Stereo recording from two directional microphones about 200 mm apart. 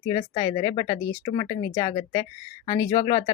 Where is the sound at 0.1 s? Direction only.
20° left (ahead or behind).